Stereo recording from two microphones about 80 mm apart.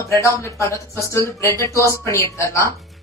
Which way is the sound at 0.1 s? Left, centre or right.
Left.